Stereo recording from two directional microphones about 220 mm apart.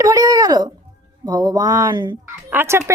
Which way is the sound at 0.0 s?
15° right (ahead or behind).